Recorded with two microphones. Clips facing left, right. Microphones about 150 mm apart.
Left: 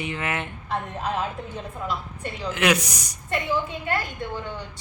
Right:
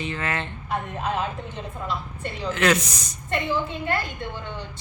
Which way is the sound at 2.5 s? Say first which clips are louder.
Right 1 dB; 15° left (ahead or behind).